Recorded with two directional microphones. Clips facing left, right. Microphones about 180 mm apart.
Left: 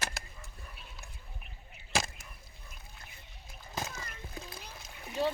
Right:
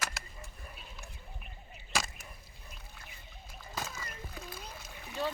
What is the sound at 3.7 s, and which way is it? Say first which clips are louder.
Splash: left 1 dB; 20° left (ahead or behind).